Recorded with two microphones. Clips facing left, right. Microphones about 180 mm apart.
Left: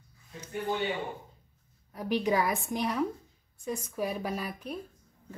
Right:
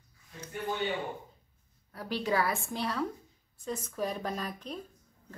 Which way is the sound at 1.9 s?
15° left (ahead or behind).